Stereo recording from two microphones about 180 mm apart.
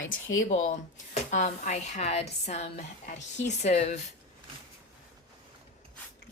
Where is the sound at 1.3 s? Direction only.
40° left (ahead or behind).